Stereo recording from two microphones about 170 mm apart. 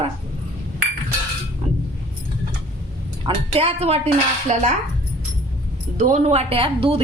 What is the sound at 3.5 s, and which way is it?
A woman's voice, 35° right (ahead or behind).